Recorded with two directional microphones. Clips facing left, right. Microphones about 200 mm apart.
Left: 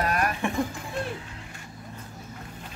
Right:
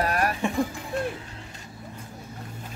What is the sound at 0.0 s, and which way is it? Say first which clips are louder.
Music: right 1 dB; 35° right (ahead or behind).